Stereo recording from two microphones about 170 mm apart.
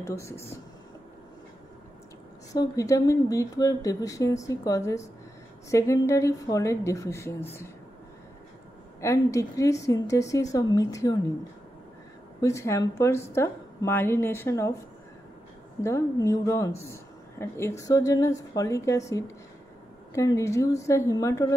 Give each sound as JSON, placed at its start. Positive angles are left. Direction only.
{"t": 0.0, "sound": "a woman's voice", "side_deg": 15}
{"t": 2.5, "sound": "a woman's voice", "side_deg": 20}
{"t": 9.0, "sound": "speech", "side_deg": 15}
{"t": 12.4, "sound": "a woman's voice", "side_deg": 15}
{"t": 15.8, "sound": "a woman's voice", "side_deg": 20}